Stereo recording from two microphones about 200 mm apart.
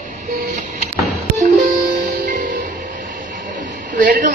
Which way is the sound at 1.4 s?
40° right (ahead or behind).